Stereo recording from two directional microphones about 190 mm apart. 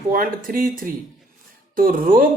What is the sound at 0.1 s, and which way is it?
Speech, 50° right (ahead or behind).